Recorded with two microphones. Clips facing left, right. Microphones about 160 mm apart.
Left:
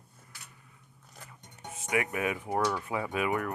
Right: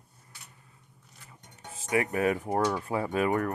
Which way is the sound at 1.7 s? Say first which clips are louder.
Right 3 dB; 30° right (ahead or behind).